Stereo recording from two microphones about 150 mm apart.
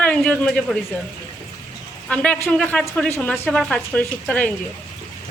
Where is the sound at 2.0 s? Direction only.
5° left (ahead or behind).